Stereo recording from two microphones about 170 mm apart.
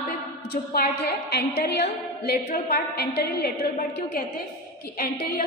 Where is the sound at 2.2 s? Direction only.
65° left (ahead or behind).